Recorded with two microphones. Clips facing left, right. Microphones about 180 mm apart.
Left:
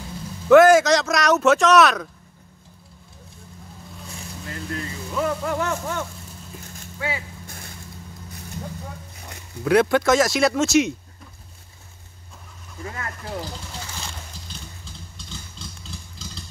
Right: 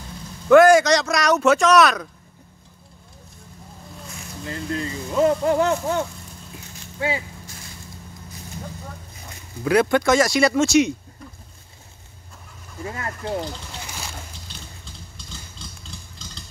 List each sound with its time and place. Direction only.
0.5 s speech: centre (ahead or behind)
4.5 s speech: 25° right (ahead or behind)
9.7 s speech: centre (ahead or behind)
12.8 s speech: 25° right (ahead or behind)
14.9 s vehicle: centre (ahead or behind)